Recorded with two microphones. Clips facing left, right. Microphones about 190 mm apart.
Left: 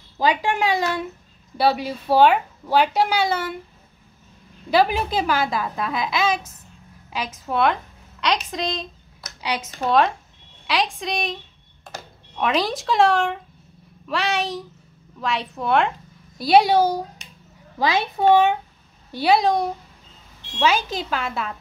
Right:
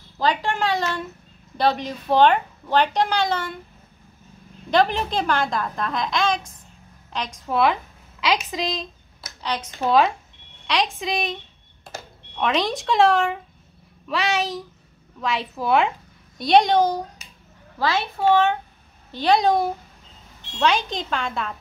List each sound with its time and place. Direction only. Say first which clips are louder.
0.2 s speech: left 2 dB; 10° left (ahead or behind)
4.6 s a woman's voice: left 1 dB; 5° left (ahead or behind)
9.4 s speech: left 1 dB; 10° left (ahead or behind)
9.8 s a woman's voice: even; centre (ahead or behind)
12.4 s a woman's voice: left 1 dB; centre (ahead or behind)